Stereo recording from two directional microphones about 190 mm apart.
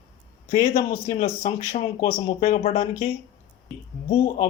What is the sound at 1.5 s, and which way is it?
Speech, 30° left (ahead or behind).